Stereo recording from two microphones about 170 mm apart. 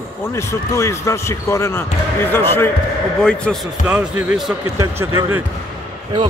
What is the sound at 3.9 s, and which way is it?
Speech, 10° right (ahead or behind).